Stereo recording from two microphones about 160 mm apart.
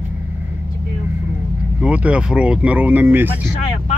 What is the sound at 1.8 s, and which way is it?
Speech, 10° right (ahead or behind).